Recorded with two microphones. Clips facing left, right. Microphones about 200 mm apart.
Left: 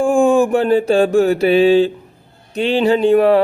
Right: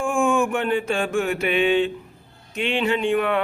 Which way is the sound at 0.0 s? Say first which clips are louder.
Left 8 dB; 35° left (ahead or behind).